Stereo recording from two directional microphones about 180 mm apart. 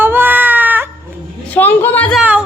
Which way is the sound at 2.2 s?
5° right (ahead or behind).